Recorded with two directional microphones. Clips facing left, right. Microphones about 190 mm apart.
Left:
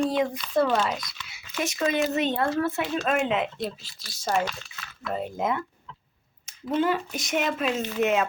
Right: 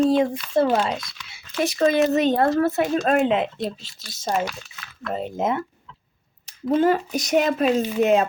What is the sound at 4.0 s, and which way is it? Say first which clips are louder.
Speech: right 1 dB; 20° right (ahead or behind).